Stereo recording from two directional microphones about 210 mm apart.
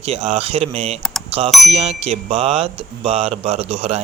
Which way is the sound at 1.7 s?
30° right (ahead or behind).